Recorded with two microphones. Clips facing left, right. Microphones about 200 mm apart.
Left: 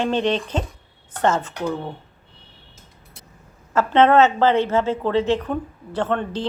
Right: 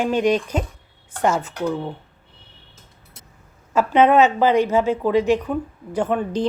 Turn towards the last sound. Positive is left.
turn(degrees=-10)  # may be behind; listen again after turning